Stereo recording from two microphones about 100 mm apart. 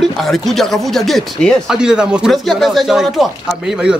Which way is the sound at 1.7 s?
5° right (ahead or behind).